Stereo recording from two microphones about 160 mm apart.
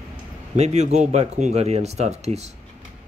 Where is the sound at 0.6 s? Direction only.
45° right (ahead or behind).